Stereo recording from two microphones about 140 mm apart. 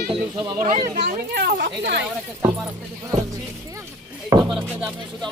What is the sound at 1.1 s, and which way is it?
Speech, 90° right.